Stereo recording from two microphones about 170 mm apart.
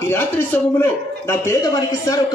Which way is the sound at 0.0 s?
15° left (ahead or behind).